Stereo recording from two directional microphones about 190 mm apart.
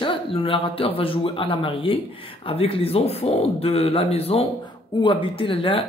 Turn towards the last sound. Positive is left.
turn(degrees=30)  # may be behind; listen again after turning